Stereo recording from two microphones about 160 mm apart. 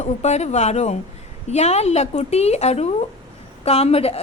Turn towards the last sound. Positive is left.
turn(degrees=40)  # may be behind; listen again after turning